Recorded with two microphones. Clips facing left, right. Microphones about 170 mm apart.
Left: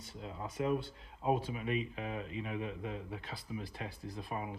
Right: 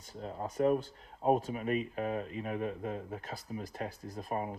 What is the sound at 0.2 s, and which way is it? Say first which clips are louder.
Speech: right 6 dB; 40° right (ahead or behind).